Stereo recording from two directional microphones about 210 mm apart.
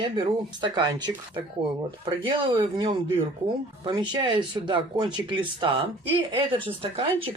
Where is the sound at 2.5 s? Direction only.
25° right (ahead or behind).